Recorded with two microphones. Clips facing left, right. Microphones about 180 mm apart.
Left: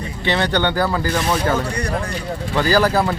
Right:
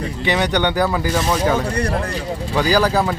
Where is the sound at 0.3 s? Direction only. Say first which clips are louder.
Even; 15° right (ahead or behind).